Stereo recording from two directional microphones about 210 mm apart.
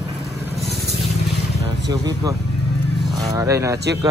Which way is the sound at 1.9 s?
15° right (ahead or behind).